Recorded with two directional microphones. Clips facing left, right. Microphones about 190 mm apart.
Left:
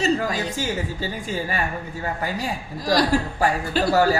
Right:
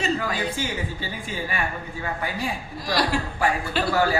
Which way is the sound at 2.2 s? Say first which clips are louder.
Left 2 dB; 40° left (ahead or behind).